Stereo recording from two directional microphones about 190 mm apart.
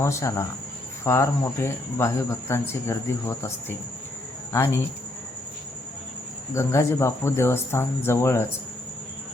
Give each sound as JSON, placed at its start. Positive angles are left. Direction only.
{"t": 0.0, "sound": "speech", "side_deg": 15}
{"t": 6.5, "sound": "speech", "side_deg": 15}